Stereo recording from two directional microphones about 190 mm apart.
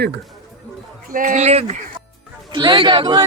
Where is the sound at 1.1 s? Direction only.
40° right (ahead or behind).